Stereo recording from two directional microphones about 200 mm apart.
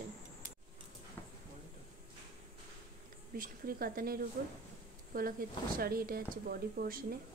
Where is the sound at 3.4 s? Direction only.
45° right (ahead or behind).